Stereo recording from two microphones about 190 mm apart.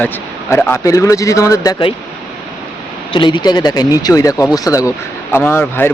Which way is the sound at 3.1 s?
25° left (ahead or behind).